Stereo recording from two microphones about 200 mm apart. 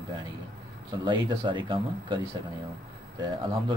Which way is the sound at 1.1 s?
25° right (ahead or behind).